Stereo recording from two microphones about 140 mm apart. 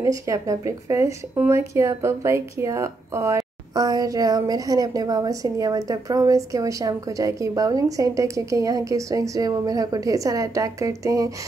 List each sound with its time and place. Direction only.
0.0 s speech: 25° right (ahead or behind)